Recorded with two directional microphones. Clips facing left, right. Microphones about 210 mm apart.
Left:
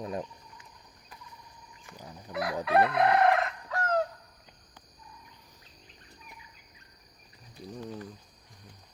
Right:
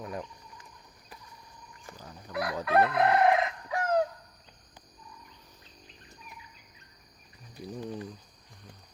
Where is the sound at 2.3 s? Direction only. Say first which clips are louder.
Even; centre (ahead or behind).